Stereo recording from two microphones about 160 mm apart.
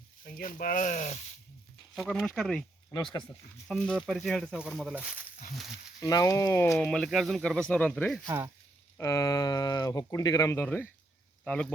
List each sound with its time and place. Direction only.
0.3 s speech: 60° left (ahead or behind)
2.0 s speech: 5° left (ahead or behind)
2.9 s speech: 25° left (ahead or behind)
3.7 s speech: 5° left (ahead or behind)
6.0 s speech: 25° left (ahead or behind); by 8.3 s 5° left (ahead or behind)
9.0 s speech: 20° left (ahead or behind)